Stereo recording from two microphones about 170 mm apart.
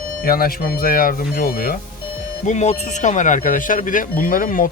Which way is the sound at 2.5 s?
40° left (ahead or behind).